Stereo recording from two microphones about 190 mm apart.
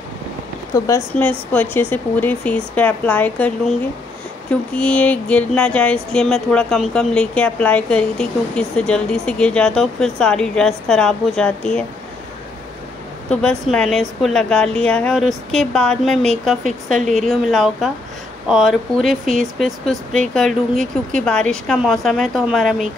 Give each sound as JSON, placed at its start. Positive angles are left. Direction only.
{"t": 0.7, "sound": "speech", "side_deg": 15}
{"t": 4.7, "sound": "speech", "side_deg": 5}
{"t": 13.3, "sound": "speech", "side_deg": 5}